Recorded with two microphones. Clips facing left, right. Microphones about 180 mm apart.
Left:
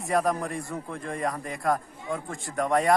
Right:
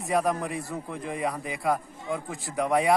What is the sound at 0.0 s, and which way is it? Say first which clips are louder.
A man's voice: even; centre (ahead or behind).